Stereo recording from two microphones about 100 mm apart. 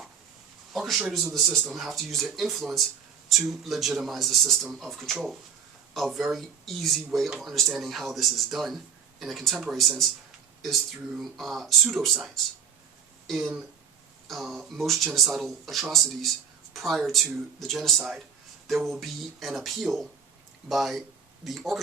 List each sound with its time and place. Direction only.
0.7 s a man's voice: centre (ahead or behind)
11.2 s speech: centre (ahead or behind)
13.4 s speech: 15° right (ahead or behind)
14.3 s speech: centre (ahead or behind)